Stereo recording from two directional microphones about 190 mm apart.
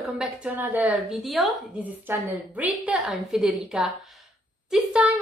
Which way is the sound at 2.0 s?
10° right (ahead or behind).